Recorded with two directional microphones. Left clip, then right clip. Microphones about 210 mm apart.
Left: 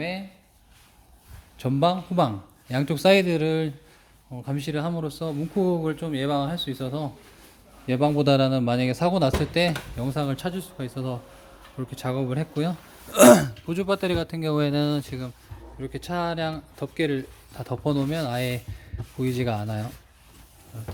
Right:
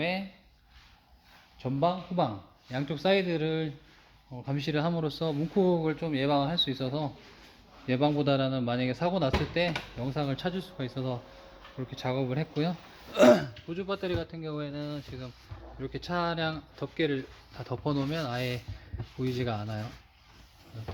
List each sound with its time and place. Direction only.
1.5 s a man's voice: 45° left (ahead or behind)
4.3 s speech: 15° left (ahead or behind)
7.9 s speech: 20° left (ahead or behind)
13.1 s speech: 30° left (ahead or behind); by 15.2 s 45° left (ahead or behind)
15.8 s speech: 15° left (ahead or behind)